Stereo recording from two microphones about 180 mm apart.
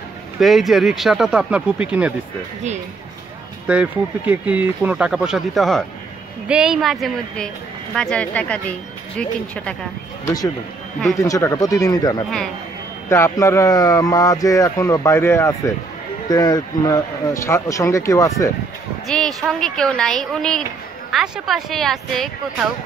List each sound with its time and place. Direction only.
0.4 s speech: centre (ahead or behind)
3.6 s speech: 5° right (ahead or behind)
10.2 s speech: 20° left (ahead or behind)
19.0 s speech: 5° left (ahead or behind)